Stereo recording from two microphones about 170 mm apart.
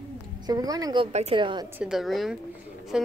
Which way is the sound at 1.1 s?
35° right (ahead or behind).